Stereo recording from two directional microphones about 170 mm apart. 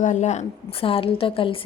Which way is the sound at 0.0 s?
45° left (ahead or behind).